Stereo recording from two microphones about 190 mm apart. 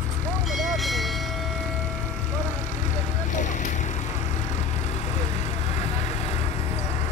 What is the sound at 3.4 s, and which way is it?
Vehicle, 40° left (ahead or behind).